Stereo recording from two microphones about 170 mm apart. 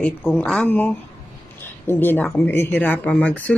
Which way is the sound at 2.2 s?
10° left (ahead or behind).